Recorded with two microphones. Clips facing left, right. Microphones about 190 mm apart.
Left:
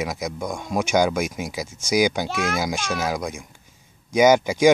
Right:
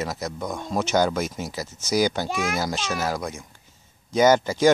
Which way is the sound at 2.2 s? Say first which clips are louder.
Left 1 dB; 10° right (ahead or behind).